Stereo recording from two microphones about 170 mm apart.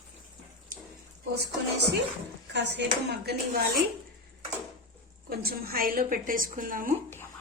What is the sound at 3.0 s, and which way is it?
Speech, 70° right (ahead or behind).